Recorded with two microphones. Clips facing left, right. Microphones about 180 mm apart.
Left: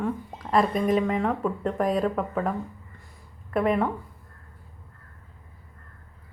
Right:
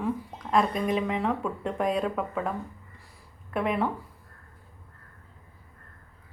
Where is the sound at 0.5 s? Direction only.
Centre (ahead or behind).